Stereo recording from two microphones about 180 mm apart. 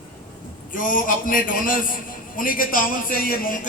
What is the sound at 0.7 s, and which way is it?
A man's voice, 50° left (ahead or behind).